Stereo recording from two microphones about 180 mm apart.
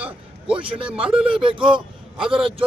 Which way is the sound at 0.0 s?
5° right (ahead or behind).